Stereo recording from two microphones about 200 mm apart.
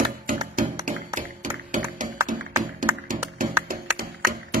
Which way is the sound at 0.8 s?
40° right (ahead or behind).